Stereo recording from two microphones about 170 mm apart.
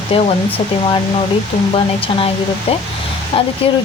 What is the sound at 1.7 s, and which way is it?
Speech, 35° left (ahead or behind).